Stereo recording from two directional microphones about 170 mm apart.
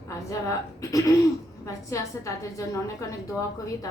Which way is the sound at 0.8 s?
20° left (ahead or behind).